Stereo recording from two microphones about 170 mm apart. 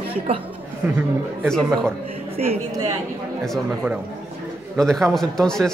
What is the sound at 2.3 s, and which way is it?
Speech, 35° right (ahead or behind).